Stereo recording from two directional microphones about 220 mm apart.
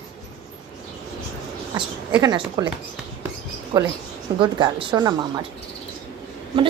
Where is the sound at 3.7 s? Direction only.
25° right (ahead or behind).